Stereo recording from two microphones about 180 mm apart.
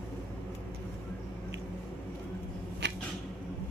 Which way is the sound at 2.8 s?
75° right (ahead or behind).